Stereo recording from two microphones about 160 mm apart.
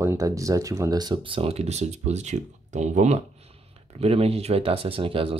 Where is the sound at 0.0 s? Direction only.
20° right (ahead or behind).